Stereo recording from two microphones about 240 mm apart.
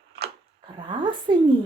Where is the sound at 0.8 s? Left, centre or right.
Centre.